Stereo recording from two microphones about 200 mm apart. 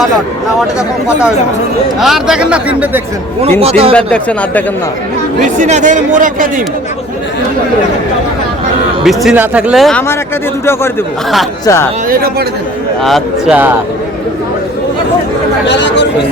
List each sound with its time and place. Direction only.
2.0 s speech: centre (ahead or behind)
3.6 s speech: 30° right (ahead or behind)
3.9 s speech: 5° left (ahead or behind)
5.4 s speech: 35° right (ahead or behind)
9.0 s speech: 5° right (ahead or behind)
11.6 s speech: 15° left (ahead or behind)
12.0 s speech: 50° right (ahead or behind)
13.0 s speech: centre (ahead or behind)
15.6 s speech: 60° left (ahead or behind)